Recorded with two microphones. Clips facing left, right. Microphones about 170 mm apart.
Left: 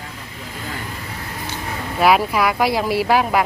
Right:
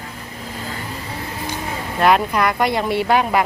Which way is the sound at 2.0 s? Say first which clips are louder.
Even; 5° left (ahead or behind).